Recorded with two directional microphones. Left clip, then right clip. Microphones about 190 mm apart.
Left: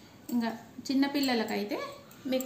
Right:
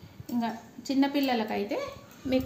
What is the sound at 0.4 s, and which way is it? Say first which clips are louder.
A child's voice: right 2 dB; 45° right (ahead or behind).